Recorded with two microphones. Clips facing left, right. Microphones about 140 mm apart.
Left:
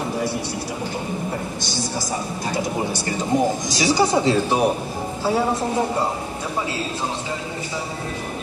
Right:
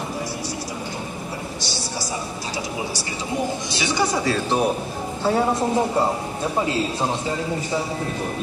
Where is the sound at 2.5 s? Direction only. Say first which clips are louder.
Left 5 dB; 50° left (ahead or behind).